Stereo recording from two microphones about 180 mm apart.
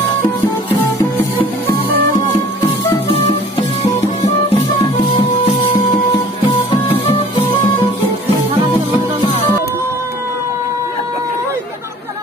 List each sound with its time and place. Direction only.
1.7 s music: 55° right (ahead or behind)
2.9 s music: 20° left (ahead or behind)
6.4 s music: 30° left (ahead or behind)